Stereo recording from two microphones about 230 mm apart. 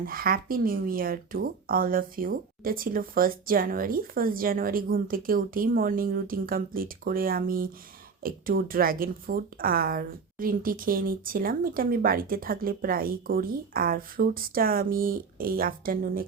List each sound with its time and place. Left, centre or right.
0.0 s speech: right